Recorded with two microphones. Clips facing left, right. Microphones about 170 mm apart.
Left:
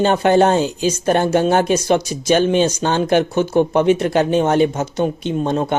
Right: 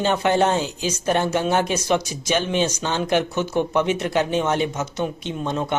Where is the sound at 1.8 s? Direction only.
35° left (ahead or behind).